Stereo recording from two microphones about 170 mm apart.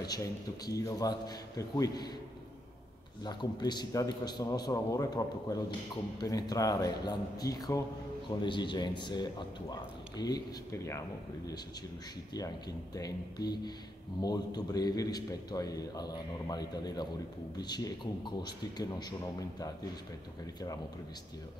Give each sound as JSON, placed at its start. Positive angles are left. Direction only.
{"t": 0.0, "sound": "a man's voice", "side_deg": 20}
{"t": 3.3, "sound": "a man's voice", "side_deg": 25}
{"t": 14.2, "sound": "a man's voice", "side_deg": 25}